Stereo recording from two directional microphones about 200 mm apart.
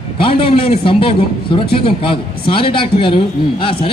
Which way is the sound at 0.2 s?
25° left (ahead or behind).